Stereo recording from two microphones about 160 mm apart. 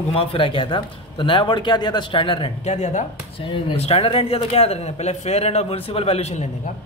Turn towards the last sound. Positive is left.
turn(degrees=45)  # may be behind; listen again after turning